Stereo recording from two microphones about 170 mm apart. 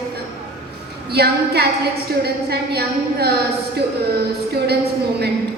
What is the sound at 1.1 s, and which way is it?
A woman's voice, 70° right (ahead or behind).